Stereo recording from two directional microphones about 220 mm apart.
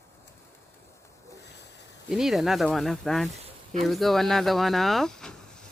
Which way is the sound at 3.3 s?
30° right (ahead or behind).